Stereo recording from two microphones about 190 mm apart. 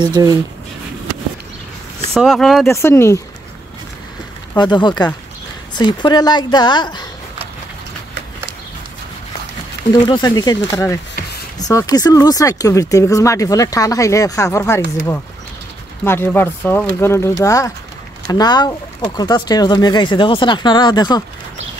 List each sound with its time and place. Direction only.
0.0 s speech: 20° right (ahead or behind)
2.1 s speech: centre (ahead or behind)
2.6 s speech: 15° left (ahead or behind)
4.6 s speech: 25° left (ahead or behind)
9.9 s speech: 25° left (ahead or behind)